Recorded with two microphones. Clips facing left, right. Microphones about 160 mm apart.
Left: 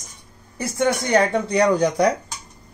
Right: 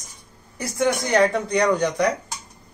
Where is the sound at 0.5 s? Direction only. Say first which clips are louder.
Left 1 dB; 25° left (ahead or behind).